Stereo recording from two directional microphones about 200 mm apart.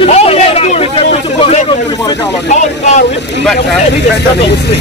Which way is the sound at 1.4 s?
30° left (ahead or behind).